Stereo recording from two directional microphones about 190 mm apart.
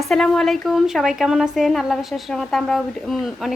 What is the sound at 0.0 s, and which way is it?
A woman's voice, centre (ahead or behind).